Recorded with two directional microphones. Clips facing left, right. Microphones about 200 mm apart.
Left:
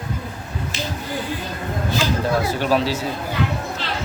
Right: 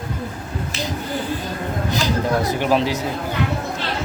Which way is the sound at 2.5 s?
15° right (ahead or behind).